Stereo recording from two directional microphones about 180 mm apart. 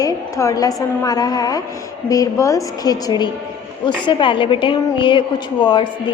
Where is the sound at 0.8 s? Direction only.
20° left (ahead or behind).